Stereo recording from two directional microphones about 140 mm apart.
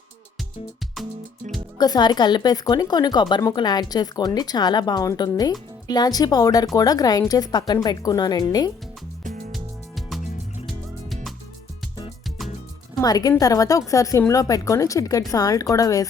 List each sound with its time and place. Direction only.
1.8 s speech: 30° left (ahead or behind)
9.2 s music: 65° right (ahead or behind)
9.5 s music: centre (ahead or behind)
13.0 s speech: 25° left (ahead or behind)